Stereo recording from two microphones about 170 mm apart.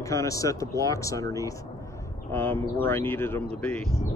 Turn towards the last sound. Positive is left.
turn(degrees=10)  # may be behind; listen again after turning